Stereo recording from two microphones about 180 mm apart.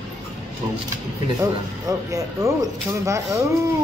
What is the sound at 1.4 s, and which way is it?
Speech, 20° right (ahead or behind).